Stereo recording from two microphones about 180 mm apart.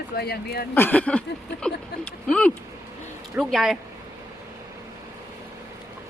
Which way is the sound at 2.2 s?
5° left (ahead or behind).